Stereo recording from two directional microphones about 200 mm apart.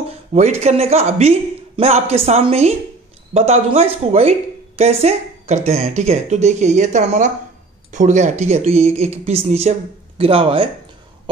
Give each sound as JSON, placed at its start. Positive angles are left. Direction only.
{"t": 0.3, "sound": "a woman's voice", "side_deg": -35}